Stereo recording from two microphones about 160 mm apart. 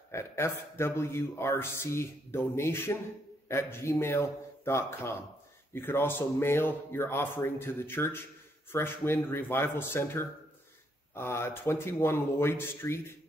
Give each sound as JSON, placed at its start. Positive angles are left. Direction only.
{"t": 0.1, "sound": "a man's voice", "side_deg": 15}